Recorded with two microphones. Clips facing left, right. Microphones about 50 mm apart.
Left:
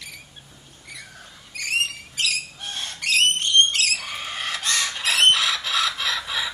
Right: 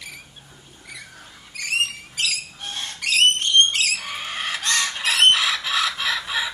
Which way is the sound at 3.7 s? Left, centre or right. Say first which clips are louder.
Right 1 dB; centre.